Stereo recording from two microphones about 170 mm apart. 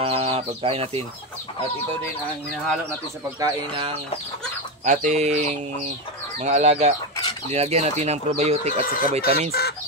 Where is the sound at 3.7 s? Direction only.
30° right (ahead or behind).